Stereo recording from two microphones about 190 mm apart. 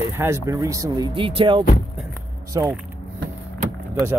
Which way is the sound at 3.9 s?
15° right (ahead or behind).